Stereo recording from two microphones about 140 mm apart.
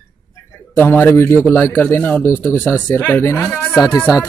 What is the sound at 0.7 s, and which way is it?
A man's voice, 15° left (ahead or behind).